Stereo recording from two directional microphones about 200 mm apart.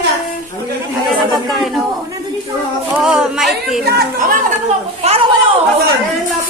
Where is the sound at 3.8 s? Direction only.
45° right (ahead or behind).